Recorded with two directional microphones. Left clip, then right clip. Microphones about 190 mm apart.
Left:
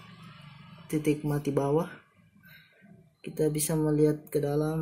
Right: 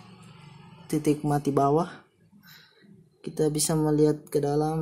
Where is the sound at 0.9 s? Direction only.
15° right (ahead or behind).